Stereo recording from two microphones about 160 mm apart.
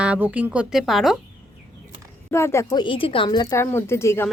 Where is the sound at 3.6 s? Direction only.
15° left (ahead or behind).